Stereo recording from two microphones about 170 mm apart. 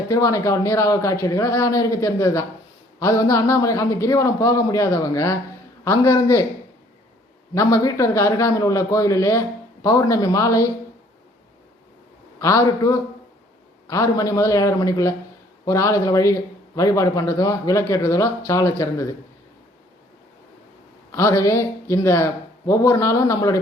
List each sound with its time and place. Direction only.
0.1 s a man's voice: 20° left (ahead or behind)
7.5 s a man's voice: 20° left (ahead or behind)
12.4 s a man's voice: 20° left (ahead or behind)
21.1 s speech: 15° left (ahead or behind)